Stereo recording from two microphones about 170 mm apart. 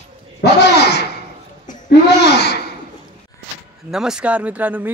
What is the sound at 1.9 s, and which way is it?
Laughter, 75° left (ahead or behind).